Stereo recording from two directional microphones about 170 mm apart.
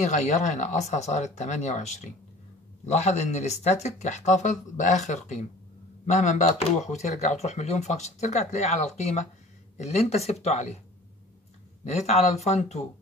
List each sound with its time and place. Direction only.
0.0 s speech: 45° left (ahead or behind)
11.8 s speech: 40° left (ahead or behind)